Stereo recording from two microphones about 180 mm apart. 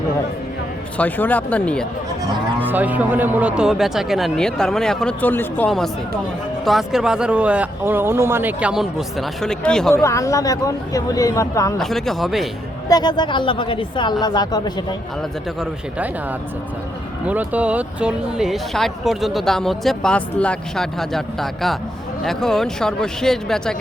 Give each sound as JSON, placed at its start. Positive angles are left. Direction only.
{"t": 0.9, "sound": "speech", "side_deg": 10}
{"t": 2.6, "sound": "speech", "side_deg": -10}
{"t": 9.9, "sound": "speech", "side_deg": 15}
{"t": 11.8, "sound": "speech", "side_deg": 0}
{"t": 12.9, "sound": "speech", "side_deg": 25}
{"t": 17.2, "sound": "speech", "side_deg": -10}